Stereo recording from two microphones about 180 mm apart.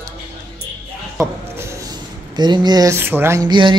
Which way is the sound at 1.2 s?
15° right (ahead or behind).